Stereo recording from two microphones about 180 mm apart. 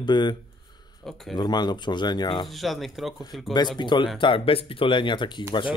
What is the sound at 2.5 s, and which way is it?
Speech, centre (ahead or behind).